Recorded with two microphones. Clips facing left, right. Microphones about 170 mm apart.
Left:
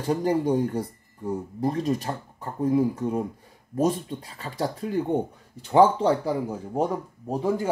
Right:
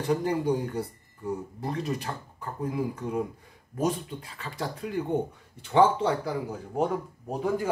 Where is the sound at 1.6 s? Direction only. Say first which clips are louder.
Left 8 dB; 40° left (ahead or behind).